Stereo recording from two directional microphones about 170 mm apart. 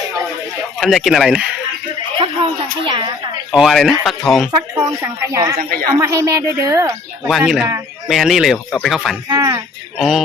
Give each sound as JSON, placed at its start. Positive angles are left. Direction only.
{"t": 0.8, "sound": "speech", "side_deg": 0}
{"t": 2.1, "sound": "speech", "side_deg": -30}
{"t": 3.5, "sound": "speech", "side_deg": 0}
{"t": 4.8, "sound": "a woman's voice", "side_deg": -15}
{"t": 7.3, "sound": "speech", "side_deg": 0}
{"t": 9.3, "sound": "a woman's voice", "side_deg": -20}
{"t": 10.0, "sound": "speech", "side_deg": 0}